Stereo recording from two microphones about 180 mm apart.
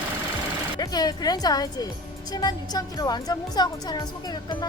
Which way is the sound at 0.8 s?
20° left (ahead or behind).